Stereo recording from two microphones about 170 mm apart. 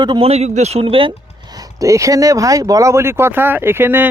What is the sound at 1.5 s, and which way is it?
Speech, 20° right (ahead or behind).